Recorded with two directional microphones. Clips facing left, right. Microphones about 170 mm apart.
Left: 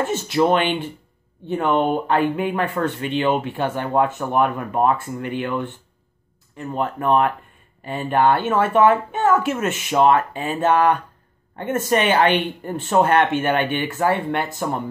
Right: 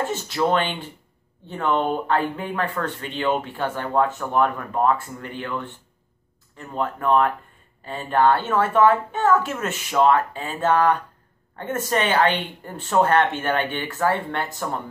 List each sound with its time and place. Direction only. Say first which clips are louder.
0.0 s speech: left 4 dB; 20° left (ahead or behind)
6.7 s speech: left 1 dB; 20° left (ahead or behind)